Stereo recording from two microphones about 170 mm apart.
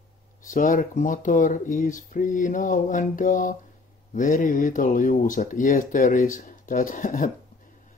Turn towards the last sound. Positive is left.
turn(degrees=55)  # may be behind; listen again after turning